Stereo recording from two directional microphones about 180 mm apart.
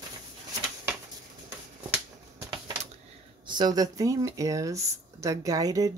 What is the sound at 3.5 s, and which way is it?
Speech, 25° right (ahead or behind).